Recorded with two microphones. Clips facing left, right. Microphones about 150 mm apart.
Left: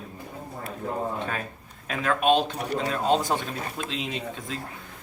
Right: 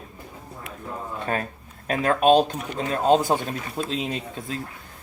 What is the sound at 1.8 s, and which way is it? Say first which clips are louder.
Speech: right 4 dB; 45° right (ahead or behind).